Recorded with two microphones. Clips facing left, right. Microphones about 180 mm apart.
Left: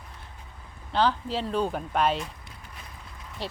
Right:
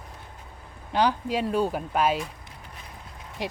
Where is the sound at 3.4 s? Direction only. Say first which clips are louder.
Right 3 dB; 15° right (ahead or behind).